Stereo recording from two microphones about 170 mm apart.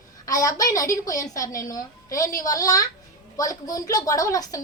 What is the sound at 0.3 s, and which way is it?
A woman's voice, 20° left (ahead or behind).